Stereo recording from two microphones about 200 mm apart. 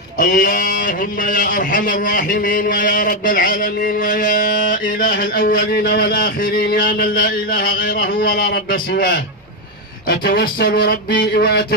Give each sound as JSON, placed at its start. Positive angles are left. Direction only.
{"t": 0.2, "sound": "a man's voice", "side_deg": 40}